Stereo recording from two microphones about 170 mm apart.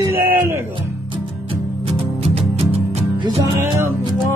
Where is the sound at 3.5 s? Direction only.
15° right (ahead or behind).